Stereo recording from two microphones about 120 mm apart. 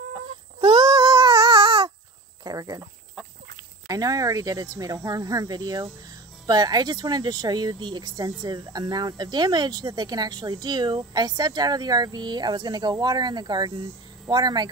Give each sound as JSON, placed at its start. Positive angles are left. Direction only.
{"t": 0.1, "sound": "a sound", "side_deg": -40}
{"t": 2.4, "sound": "cricket", "side_deg": -30}
{"t": 3.8, "sound": "speech", "side_deg": -30}